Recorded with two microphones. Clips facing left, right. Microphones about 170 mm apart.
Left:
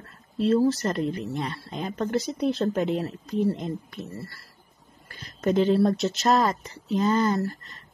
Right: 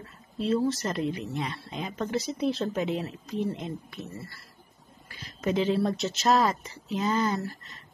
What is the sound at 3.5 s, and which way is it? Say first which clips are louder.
Speech: left 5 dB; 40° left (ahead or behind).